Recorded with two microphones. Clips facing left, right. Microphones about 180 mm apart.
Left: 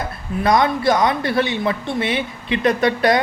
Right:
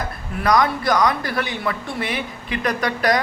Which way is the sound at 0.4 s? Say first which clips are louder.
Left 2 dB; 25° left (ahead or behind).